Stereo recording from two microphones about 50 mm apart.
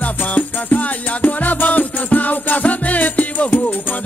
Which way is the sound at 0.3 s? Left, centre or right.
Left.